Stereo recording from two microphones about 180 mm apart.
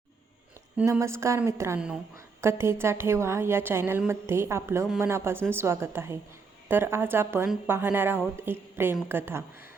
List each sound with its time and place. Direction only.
0.8 s a woman's voice: 15° right (ahead or behind)